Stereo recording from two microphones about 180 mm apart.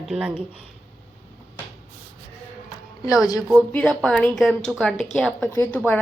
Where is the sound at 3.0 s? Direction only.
20° left (ahead or behind).